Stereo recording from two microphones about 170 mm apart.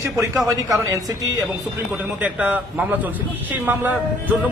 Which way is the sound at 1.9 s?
10° right (ahead or behind).